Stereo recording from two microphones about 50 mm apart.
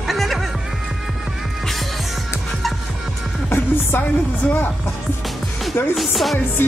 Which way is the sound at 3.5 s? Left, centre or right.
Left.